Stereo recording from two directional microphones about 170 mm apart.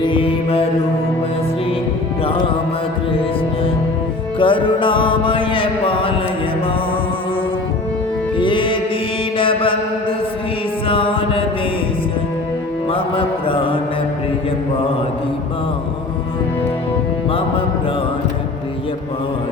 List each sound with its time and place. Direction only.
0.0 s mantra: 30° left (ahead or behind)
2.2 s music: 30° left (ahead or behind)
4.4 s music: 30° left (ahead or behind)
8.4 s music: 30° left (ahead or behind)
9.4 s mantra: 30° left (ahead or behind)
12.9 s music: 30° left (ahead or behind)